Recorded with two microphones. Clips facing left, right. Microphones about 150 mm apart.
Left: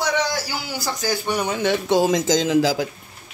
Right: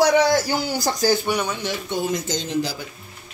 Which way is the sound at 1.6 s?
75° left (ahead or behind).